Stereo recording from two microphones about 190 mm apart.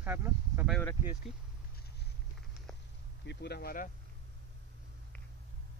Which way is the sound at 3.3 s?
60° left (ahead or behind).